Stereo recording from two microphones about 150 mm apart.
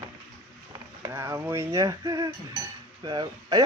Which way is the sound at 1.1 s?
20° right (ahead or behind).